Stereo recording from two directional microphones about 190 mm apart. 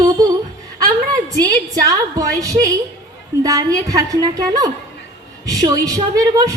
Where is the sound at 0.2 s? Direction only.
20° right (ahead or behind).